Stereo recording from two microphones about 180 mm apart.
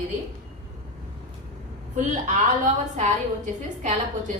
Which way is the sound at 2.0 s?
45° right (ahead or behind).